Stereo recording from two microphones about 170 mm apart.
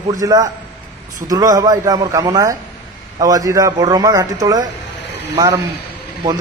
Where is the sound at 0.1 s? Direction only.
20° right (ahead or behind).